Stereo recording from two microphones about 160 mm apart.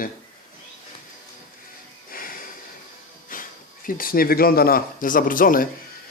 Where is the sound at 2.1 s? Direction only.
60° left (ahead or behind).